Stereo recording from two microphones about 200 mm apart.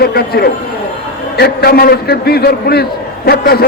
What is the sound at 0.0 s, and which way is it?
A man's voice, 50° left (ahead or behind).